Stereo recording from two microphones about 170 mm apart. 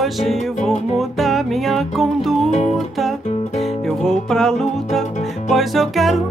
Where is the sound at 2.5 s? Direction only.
40° left (ahead or behind).